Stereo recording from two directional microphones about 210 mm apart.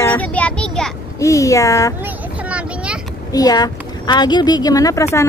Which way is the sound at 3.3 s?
20° left (ahead or behind).